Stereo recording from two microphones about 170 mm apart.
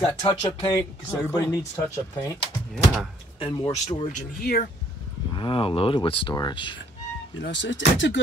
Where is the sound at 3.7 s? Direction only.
40° left (ahead or behind).